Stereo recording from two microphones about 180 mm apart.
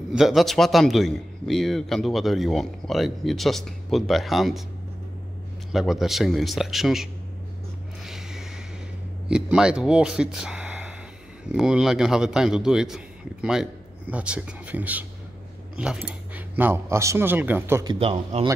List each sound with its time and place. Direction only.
0.1 s a man's voice: centre (ahead or behind)
5.7 s a man's voice: centre (ahead or behind)
8.0 s music: centre (ahead or behind)
9.3 s a man's voice: 5° right (ahead or behind)
17.8 s speech: 35° right (ahead or behind)